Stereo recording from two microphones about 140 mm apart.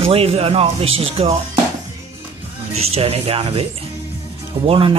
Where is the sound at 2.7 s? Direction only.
45° right (ahead or behind).